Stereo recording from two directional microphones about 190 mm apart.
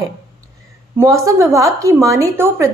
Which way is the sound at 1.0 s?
15° right (ahead or behind).